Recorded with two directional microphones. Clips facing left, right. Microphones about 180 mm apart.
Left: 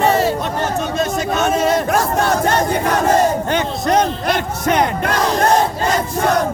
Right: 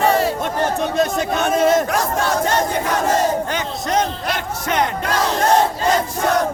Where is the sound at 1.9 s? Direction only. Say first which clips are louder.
Left 3 dB; 55° left (ahead or behind).